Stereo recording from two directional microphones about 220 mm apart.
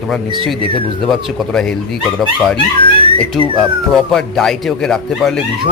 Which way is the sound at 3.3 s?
Centre (ahead or behind).